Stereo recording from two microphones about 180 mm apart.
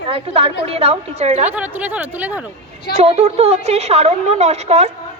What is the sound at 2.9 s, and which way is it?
Speech, 40° right (ahead or behind).